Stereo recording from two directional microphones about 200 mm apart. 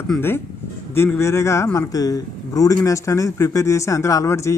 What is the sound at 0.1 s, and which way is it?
A man's voice, 10° left (ahead or behind).